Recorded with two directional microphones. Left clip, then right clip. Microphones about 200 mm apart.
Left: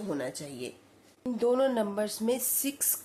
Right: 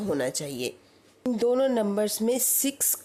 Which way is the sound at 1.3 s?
35° right (ahead or behind).